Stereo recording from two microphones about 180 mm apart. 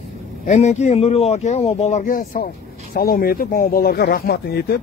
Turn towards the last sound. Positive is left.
turn(degrees=60)  # may be behind; listen again after turning